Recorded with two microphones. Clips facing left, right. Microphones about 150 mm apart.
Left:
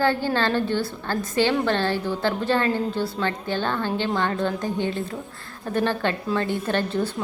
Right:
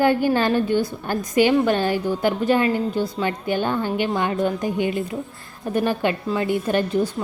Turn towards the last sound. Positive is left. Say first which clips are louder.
# right 3 dB
turn(degrees=-10)  # may be behind; listen again after turning